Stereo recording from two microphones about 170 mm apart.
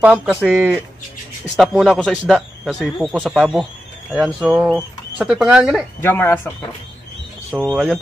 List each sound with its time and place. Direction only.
0.0 s a man's voice: 10° right (ahead or behind)
5.9 s speech: 10° left (ahead or behind)
7.5 s a man's voice: 5° right (ahead or behind)